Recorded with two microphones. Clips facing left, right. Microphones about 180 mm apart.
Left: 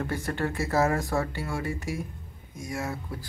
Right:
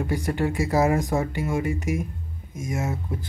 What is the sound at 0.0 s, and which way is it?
Speech, 15° right (ahead or behind).